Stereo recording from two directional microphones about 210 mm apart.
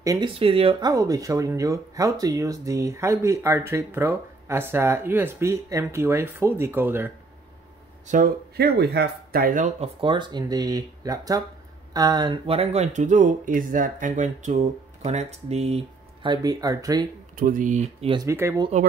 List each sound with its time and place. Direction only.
0.0 s speech: 15° right (ahead or behind)
0.3 s speech: 25° right (ahead or behind); by 7.1 s 10° right (ahead or behind)
8.1 s speech: 45° right (ahead or behind)
9.9 s speech: 20° right (ahead or behind)
17.4 s speech: 40° right (ahead or behind)
18.1 s speech: 15° right (ahead or behind)